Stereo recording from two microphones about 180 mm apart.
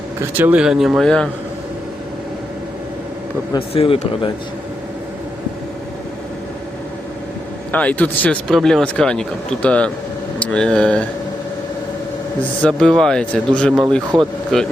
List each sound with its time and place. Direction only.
0.2 s a man's voice: 10° right (ahead or behind)
3.5 s a man's voice: 30° left (ahead or behind)
7.7 s a man's voice: 10° left (ahead or behind)
12.6 s a man's voice: 5° left (ahead or behind)